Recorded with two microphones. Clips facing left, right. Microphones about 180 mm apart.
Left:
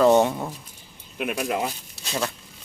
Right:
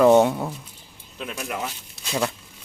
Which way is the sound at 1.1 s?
15° left (ahead or behind).